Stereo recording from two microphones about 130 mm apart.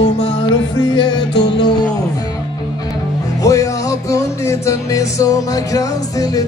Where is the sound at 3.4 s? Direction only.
25° left (ahead or behind).